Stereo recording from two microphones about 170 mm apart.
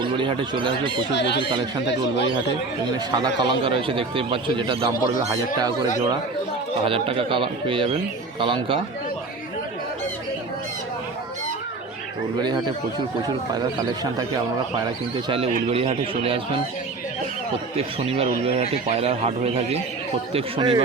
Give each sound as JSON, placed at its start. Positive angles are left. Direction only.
{"t": 0.0, "sound": "speech", "side_deg": -30}
{"t": 1.1, "sound": "speech", "side_deg": 90}
{"t": 3.1, "sound": "a man's voice", "side_deg": -25}
{"t": 6.8, "sound": "a man's voice", "side_deg": -30}
{"t": 12.4, "sound": "speech", "side_deg": -25}
{"t": 15.7, "sound": "a man's voice", "side_deg": -35}
{"t": 18.4, "sound": "a man's voice", "side_deg": -35}